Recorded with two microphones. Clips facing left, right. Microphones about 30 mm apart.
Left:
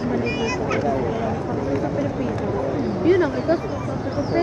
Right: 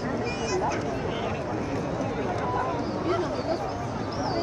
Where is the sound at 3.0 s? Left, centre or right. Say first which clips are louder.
Left 12 dB; left.